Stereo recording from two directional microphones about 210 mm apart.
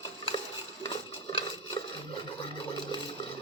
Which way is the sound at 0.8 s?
25° left (ahead or behind).